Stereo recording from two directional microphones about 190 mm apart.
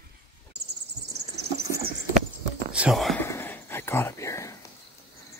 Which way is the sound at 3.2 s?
10° left (ahead or behind).